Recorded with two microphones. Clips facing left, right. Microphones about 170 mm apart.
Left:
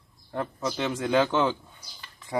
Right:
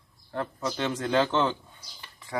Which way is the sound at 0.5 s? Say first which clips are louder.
Left 1 dB; 10° left (ahead or behind).